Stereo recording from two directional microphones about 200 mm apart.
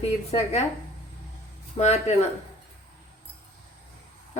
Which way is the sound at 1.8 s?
35° left (ahead or behind).